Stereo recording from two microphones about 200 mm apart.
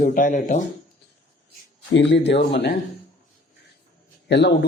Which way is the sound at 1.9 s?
65° left (ahead or behind).